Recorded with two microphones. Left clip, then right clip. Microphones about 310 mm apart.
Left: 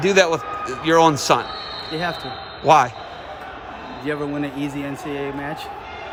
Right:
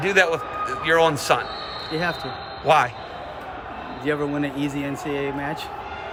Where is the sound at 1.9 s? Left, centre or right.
Centre.